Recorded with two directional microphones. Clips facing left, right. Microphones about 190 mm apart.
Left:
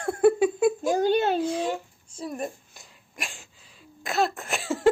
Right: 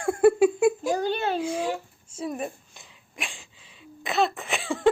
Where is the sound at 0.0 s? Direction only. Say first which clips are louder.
Right 2 dB; 10° right (ahead or behind).